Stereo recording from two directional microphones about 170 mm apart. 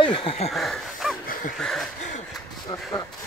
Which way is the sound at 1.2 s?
55° left (ahead or behind).